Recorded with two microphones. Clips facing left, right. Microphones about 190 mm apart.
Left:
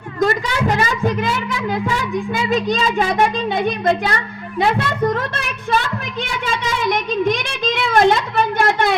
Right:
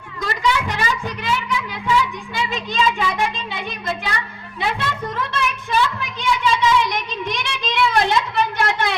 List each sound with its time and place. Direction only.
0.2 s speech: 45° left (ahead or behind)